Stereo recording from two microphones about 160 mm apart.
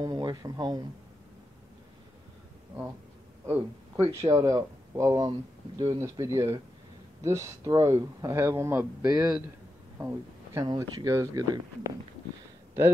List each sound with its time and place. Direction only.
0.0 s speech: 25° right (ahead or behind)
3.4 s speech: 15° right (ahead or behind)
9.9 s a sound: 15° right (ahead or behind)
10.6 s speech: 25° right (ahead or behind)